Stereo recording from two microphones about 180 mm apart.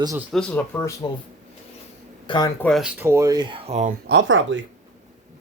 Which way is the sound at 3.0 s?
15° right (ahead or behind).